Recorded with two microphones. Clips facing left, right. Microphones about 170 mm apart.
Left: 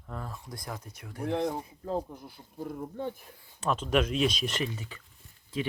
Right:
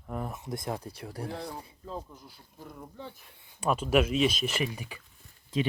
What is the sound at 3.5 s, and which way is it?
Speech, 10° right (ahead or behind).